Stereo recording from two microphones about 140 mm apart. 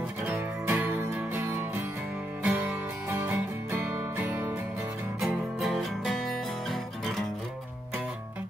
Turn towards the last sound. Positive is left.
turn(degrees=0)  # may be behind; listen again after turning